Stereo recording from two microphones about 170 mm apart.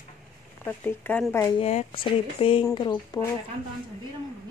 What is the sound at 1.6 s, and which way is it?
Speech, 35° left (ahead or behind).